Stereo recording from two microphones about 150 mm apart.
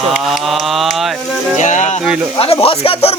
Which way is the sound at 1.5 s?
55° left (ahead or behind).